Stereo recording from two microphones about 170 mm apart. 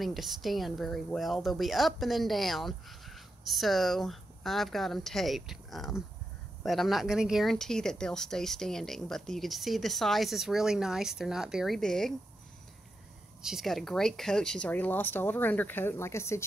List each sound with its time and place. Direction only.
0.0 s a woman's voice: centre (ahead or behind)
13.4 s speech: centre (ahead or behind); by 16.4 s 15° left (ahead or behind)